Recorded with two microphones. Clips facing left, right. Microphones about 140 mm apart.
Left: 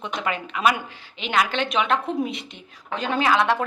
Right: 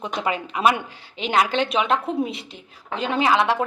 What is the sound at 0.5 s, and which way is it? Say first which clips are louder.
A woman's voice: right 2 dB; 30° right (ahead or behind).